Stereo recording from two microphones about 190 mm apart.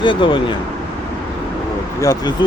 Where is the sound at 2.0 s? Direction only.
20° left (ahead or behind).